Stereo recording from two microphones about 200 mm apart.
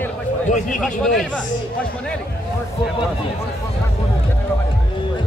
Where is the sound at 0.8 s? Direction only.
Centre (ahead or behind).